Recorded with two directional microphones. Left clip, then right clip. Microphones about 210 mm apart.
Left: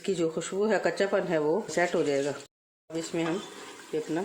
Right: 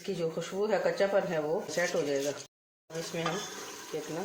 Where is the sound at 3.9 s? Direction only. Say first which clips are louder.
Left 6 dB; 60° left (ahead or behind).